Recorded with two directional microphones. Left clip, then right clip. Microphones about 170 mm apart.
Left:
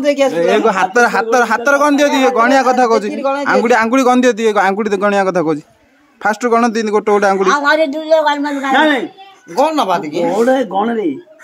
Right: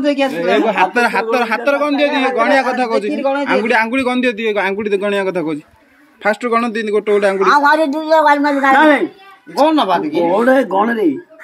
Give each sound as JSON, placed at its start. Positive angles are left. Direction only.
{"t": 0.0, "sound": "a man's voice", "side_deg": 40}
{"t": 7.4, "sound": "a woman's voice", "side_deg": 10}
{"t": 9.6, "sound": "speech", "side_deg": 30}
{"t": 10.4, "sound": "speech", "side_deg": 0}